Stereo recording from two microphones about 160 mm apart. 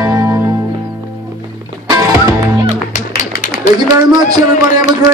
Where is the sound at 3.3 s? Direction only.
60° left (ahead or behind).